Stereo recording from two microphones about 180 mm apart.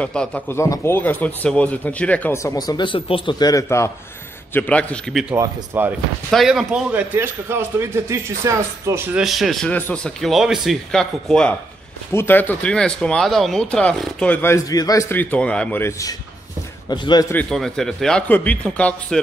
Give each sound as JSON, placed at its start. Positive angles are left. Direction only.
{"t": 0.0, "sound": "speech", "side_deg": 5}
{"t": 5.3, "sound": "a man's voice", "side_deg": -15}
{"t": 6.3, "sound": "a man's voice", "side_deg": 0}
{"t": 9.2, "sound": "a man's voice", "side_deg": 0}
{"t": 17.3, "sound": "speech", "side_deg": 5}